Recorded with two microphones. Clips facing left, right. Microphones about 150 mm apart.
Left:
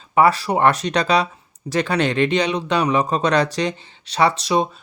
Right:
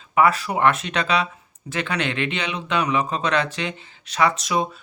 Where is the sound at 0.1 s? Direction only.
35° left (ahead or behind).